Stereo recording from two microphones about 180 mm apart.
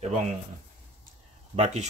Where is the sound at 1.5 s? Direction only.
40° right (ahead or behind).